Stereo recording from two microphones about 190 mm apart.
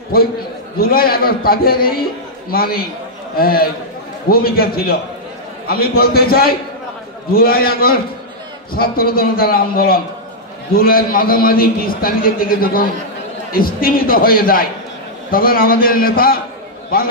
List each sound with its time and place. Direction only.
0.1 s a man's voice: 50° left (ahead or behind)